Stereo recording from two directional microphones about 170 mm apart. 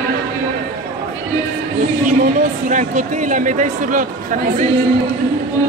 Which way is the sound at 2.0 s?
45° right (ahead or behind).